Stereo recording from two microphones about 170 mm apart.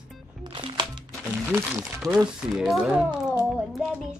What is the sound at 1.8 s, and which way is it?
Speech, centre (ahead or behind).